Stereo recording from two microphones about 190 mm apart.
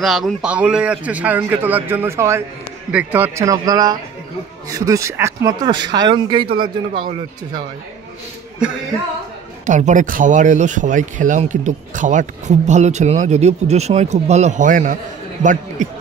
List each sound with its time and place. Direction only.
0.0 s a man's voice: centre (ahead or behind); by 6.7 s 25° right (ahead or behind)
9.7 s speech: 40° right (ahead or behind)